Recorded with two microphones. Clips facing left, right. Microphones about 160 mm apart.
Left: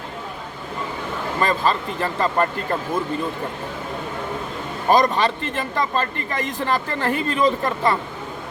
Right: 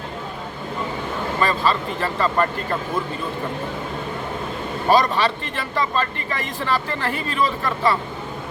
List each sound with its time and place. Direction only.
1.4 s speech: 45° left (ahead or behind)
4.9 s speech: 45° left (ahead or behind)